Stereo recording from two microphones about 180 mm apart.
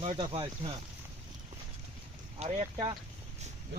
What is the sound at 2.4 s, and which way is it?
Speech, 30° right (ahead or behind).